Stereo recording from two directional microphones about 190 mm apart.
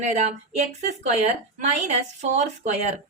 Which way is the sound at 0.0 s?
35° right (ahead or behind).